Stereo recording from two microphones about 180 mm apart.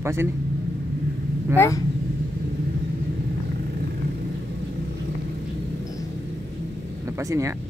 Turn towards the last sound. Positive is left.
turn(degrees=-15)  # may be behind; listen again after turning